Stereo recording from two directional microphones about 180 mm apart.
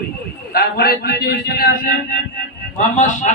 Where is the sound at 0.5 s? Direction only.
60° left (ahead or behind).